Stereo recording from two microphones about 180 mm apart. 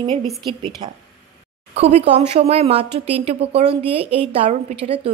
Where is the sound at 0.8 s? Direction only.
25° right (ahead or behind).